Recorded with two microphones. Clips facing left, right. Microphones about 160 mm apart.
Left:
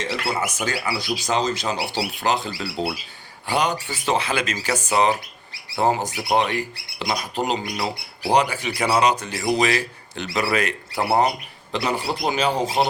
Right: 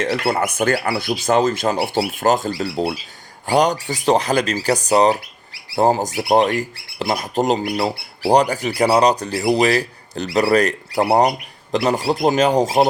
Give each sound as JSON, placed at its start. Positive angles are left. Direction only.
{"t": 0.0, "sound": "speech", "side_deg": -55}